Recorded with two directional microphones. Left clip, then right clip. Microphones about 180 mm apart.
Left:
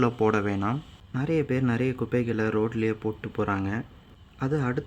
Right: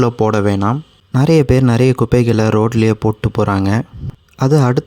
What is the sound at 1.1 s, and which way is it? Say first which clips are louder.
Speech: right 14 dB; 45° right (ahead or behind).